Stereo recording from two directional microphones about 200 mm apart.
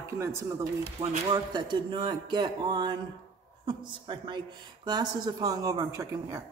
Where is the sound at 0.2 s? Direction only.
15° right (ahead or behind).